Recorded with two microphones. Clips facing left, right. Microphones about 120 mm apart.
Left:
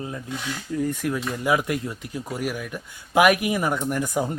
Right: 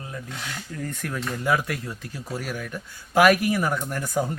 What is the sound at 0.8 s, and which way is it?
Speech, 10° left (ahead or behind).